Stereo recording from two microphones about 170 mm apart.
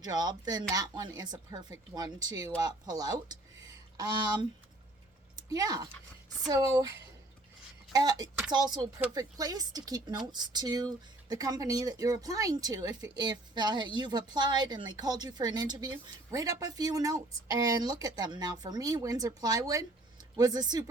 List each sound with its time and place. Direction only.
0.0 s a woman's voice: 25° right (ahead or behind)
7.9 s a woman's voice: 20° right (ahead or behind)